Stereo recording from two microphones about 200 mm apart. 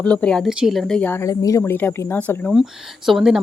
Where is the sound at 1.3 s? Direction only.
15° left (ahead or behind).